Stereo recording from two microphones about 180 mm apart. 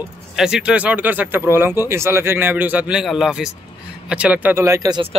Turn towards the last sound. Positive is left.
turn(degrees=-25)  # may be behind; listen again after turning